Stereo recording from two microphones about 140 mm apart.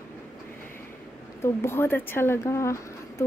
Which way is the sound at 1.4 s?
15° left (ahead or behind).